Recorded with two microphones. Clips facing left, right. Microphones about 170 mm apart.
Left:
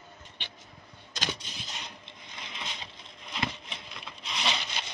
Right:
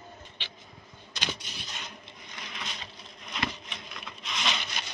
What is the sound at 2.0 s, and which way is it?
Wood, 25° left (ahead or behind).